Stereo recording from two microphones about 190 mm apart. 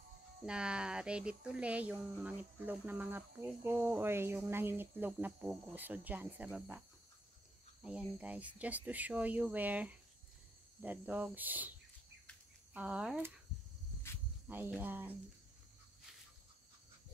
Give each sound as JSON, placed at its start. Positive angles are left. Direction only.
{"t": 0.5, "sound": "speech", "side_deg": -5}
{"t": 7.8, "sound": "speech", "side_deg": -5}
{"t": 12.7, "sound": "speech", "side_deg": -5}
{"t": 14.5, "sound": "speech", "side_deg": -10}